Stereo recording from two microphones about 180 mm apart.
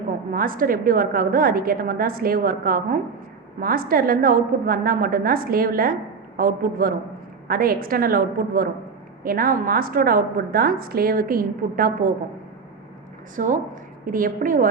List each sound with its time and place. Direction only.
0.3 s a woman's voice: 50° right (ahead or behind)
13.3 s a woman's voice: 45° right (ahead or behind)